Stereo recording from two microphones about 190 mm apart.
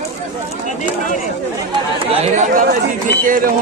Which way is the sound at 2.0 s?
40° right (ahead or behind).